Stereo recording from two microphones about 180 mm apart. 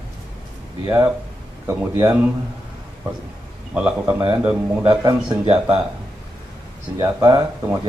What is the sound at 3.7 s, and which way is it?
Speech, 5° right (ahead or behind).